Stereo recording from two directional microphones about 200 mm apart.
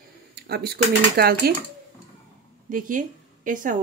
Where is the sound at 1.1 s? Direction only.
50° right (ahead or behind).